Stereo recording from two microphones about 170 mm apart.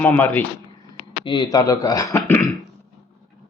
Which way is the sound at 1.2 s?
25° left (ahead or behind).